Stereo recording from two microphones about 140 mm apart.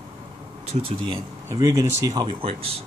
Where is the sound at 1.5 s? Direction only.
25° right (ahead or behind).